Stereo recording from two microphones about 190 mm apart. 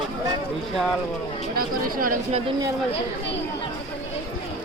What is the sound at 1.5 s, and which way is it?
Speech, 50° right (ahead or behind).